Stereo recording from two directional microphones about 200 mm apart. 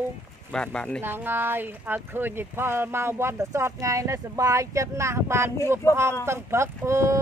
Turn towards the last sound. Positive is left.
turn(degrees=-15)  # may be behind; listen again after turning